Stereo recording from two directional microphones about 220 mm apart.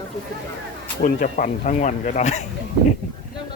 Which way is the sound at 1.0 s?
35° left (ahead or behind).